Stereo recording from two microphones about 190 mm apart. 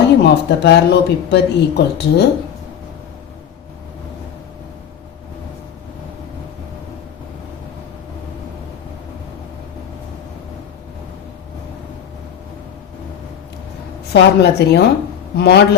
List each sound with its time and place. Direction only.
0.2 s speech: 60° left (ahead or behind)
14.1 s speech: 60° left (ahead or behind)